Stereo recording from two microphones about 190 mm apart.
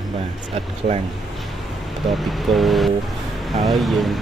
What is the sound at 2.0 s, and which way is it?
Speech, centre (ahead or behind).